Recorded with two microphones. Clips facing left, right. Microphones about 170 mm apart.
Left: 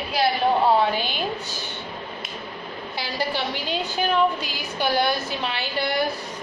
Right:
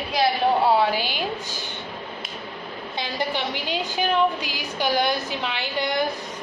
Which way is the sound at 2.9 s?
20° right (ahead or behind).